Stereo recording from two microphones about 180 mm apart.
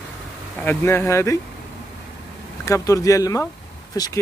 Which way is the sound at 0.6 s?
10° left (ahead or behind).